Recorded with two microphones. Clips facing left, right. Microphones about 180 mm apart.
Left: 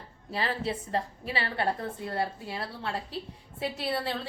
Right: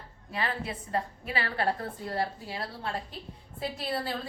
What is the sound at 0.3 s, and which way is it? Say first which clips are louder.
A woman's voice: left 3 dB; 30° left (ahead or behind).